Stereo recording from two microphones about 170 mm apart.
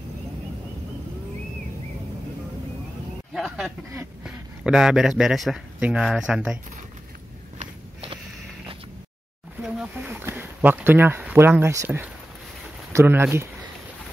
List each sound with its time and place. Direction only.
3.3 s speech: centre (ahead or behind)
7.5 s walk: 35° right (ahead or behind)
9.9 s speech: 10° right (ahead or behind)